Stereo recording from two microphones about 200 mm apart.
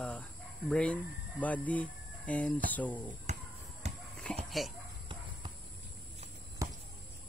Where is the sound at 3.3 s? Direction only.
35° right (ahead or behind).